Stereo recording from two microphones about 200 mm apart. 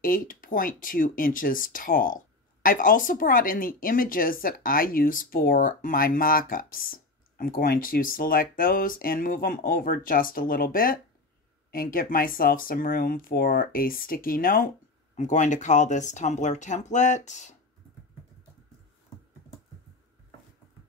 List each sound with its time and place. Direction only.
0.0 s speech: 45° left (ahead or behind)